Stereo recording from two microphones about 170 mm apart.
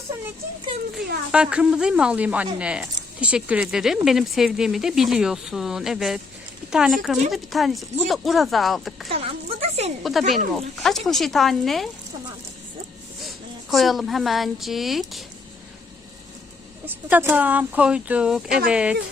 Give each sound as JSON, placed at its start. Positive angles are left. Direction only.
{"t": 1.3, "sound": "speech", "side_deg": -5}
{"t": 9.0, "sound": "a sound", "side_deg": -35}
{"t": 10.0, "sound": "speech", "side_deg": 0}
{"t": 13.2, "sound": "a woman's voice", "side_deg": 0}
{"t": 16.8, "sound": "speech", "side_deg": -10}